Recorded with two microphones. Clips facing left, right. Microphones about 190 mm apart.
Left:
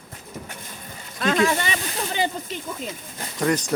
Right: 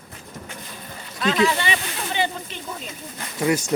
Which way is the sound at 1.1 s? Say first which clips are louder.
Even; 45° left (ahead or behind).